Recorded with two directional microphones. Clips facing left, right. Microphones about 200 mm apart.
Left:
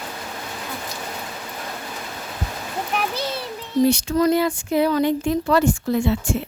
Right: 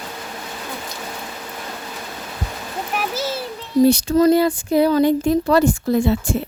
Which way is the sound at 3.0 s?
5° right (ahead or behind).